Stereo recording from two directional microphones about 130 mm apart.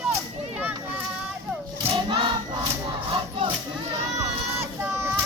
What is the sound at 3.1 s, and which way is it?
Crowd, 40° right (ahead or behind).